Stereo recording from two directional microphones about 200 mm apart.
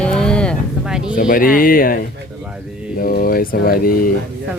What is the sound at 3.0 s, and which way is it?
Speech, 45° left (ahead or behind).